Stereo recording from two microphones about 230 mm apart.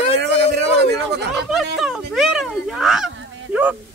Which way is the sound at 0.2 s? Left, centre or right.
Right.